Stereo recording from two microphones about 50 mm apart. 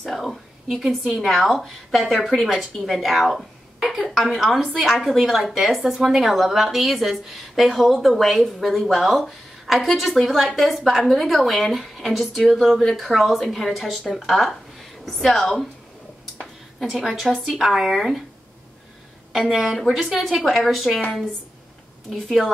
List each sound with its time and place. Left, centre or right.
0.0 s a woman's voice: centre
16.8 s a woman's voice: centre
19.3 s a woman's voice: centre
22.1 s a woman's voice: centre